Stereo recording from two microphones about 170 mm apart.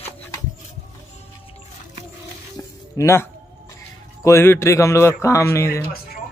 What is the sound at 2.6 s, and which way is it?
Music, 15° left (ahead or behind).